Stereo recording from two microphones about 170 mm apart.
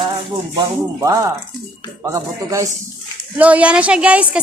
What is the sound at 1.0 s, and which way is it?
Speech, 20° right (ahead or behind).